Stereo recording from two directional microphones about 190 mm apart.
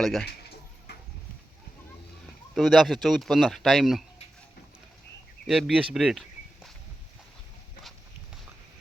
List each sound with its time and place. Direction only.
0.0 s speech: centre (ahead or behind)
0.9 s a sound: 60° left (ahead or behind)
2.6 s speech: centre (ahead or behind)
5.5 s speech: centre (ahead or behind)